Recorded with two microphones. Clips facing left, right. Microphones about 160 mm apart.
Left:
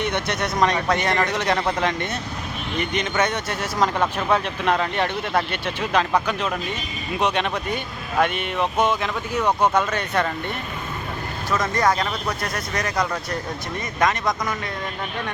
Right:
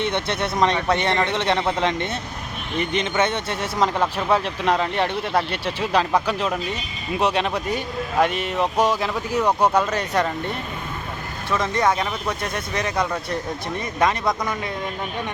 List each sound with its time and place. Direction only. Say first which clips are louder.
0.0 s speech: right 1 dB; 25° right (ahead or behind)
3.9 s speech: right 1 dB; 5° right (ahead or behind)
4.4 s speech: right 1 dB; 30° right (ahead or behind)
7.2 s speech: right 1 dB; 30° right (ahead or behind)
9.4 s speech: right 1 dB; 10° right (ahead or behind)
9.7 s speech: right 1 dB; 35° right (ahead or behind)
11.5 s speech: even; 10° right (ahead or behind)